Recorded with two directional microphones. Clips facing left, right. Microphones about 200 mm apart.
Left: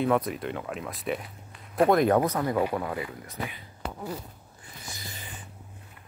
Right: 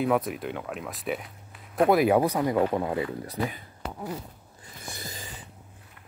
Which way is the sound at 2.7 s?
25° right (ahead or behind).